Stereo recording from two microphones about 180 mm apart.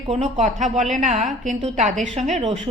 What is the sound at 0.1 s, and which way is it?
A woman's voice, 40° right (ahead or behind).